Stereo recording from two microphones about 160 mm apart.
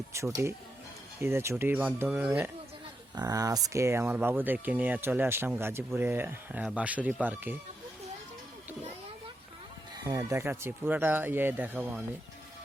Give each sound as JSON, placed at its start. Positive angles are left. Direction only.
{"t": 0.1, "sound": "speech", "side_deg": -20}
{"t": 3.2, "sound": "speech", "side_deg": -20}
{"t": 10.0, "sound": "speech", "side_deg": -20}